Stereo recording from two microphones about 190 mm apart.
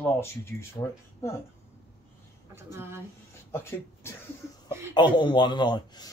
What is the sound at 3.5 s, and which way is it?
Speech, 15° left (ahead or behind).